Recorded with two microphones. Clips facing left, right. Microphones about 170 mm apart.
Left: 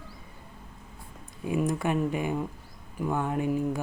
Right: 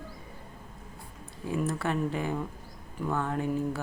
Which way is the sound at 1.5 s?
15° left (ahead or behind).